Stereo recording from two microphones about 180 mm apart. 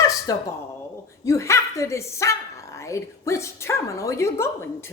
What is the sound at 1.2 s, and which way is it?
Speech, 15° left (ahead or behind).